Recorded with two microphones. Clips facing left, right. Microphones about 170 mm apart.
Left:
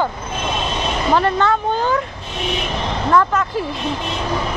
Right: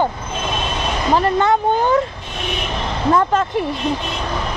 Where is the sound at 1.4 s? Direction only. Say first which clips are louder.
Right 2 dB; 15° right (ahead or behind).